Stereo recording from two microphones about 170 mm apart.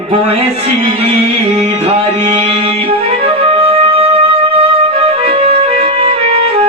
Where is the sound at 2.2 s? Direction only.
40° right (ahead or behind).